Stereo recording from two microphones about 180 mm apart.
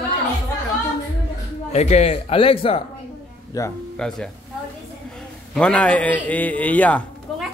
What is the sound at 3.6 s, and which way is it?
Speech, 20° left (ahead or behind).